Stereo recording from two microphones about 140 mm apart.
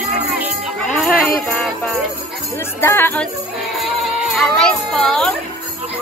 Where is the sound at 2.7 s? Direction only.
15° left (ahead or behind).